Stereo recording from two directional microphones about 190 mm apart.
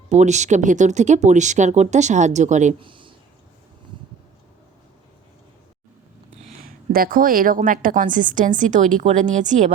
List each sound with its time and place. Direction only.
0.1 s speech: 40° right (ahead or behind)
2.8 s a sound: 25° right (ahead or behind)
6.7 s a woman's voice: 50° right (ahead or behind)